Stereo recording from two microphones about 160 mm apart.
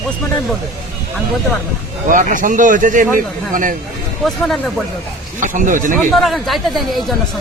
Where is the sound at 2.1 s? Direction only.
55° right (ahead or behind).